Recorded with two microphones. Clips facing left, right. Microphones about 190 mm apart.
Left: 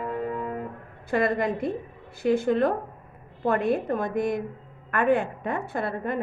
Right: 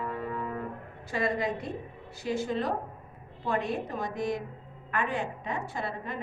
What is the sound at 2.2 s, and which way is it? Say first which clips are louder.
A woman's voice: left 8 dB; 55° left (ahead or behind).